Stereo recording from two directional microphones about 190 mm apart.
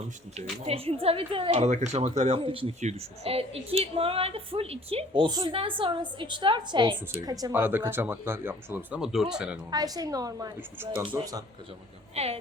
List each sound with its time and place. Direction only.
0.6 s speech: 30° right (ahead or behind); by 9.6 s 5° right (ahead or behind)
9.6 s speech: 20° right (ahead or behind)
12.1 s a woman's voice: 35° right (ahead or behind)